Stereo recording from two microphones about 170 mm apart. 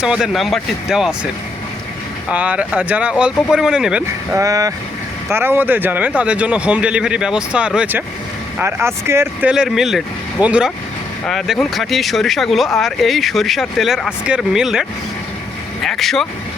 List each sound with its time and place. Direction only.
0.0 s speech: 5° right (ahead or behind)
2.3 s speech: 10° right (ahead or behind)
4.4 s speech: 20° right (ahead or behind); by 16.2 s centre (ahead or behind)